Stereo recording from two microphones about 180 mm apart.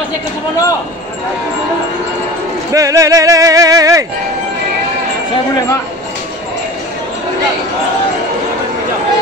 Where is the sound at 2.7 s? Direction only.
20° right (ahead or behind).